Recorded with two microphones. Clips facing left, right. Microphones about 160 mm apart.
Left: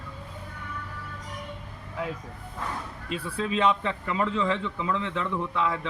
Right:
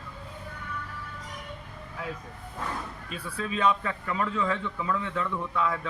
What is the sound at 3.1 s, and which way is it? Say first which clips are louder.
A man's voice: left 5 dB; 25° left (ahead or behind).